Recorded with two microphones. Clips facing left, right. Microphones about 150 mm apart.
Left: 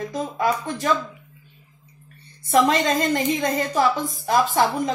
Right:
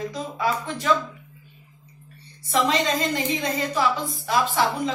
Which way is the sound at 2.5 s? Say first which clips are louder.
Left 4 dB; 50° left (ahead or behind).